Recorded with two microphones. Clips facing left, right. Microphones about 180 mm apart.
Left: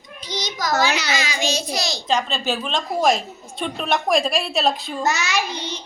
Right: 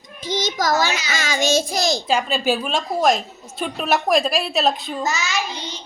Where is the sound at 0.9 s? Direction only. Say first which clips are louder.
Left 3 dB; 70° left (ahead or behind).